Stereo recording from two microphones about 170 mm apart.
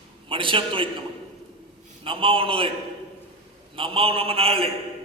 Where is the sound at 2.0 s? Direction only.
30° right (ahead or behind).